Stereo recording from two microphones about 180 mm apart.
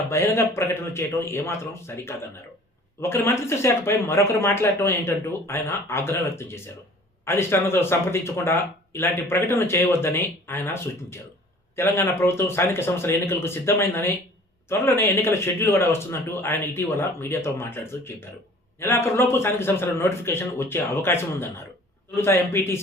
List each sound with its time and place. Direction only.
0.1 s a man's voice: 15° left (ahead or behind)